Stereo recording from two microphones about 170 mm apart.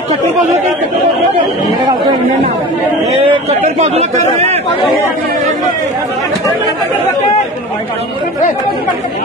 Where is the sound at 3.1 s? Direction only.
35° right (ahead or behind).